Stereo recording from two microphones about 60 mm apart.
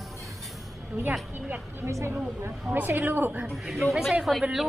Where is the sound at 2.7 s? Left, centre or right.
Right.